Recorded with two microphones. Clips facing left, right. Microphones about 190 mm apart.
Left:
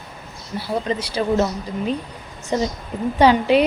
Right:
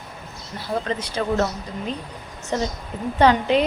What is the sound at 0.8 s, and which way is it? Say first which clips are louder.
Speech: left 4 dB; 10° left (ahead or behind).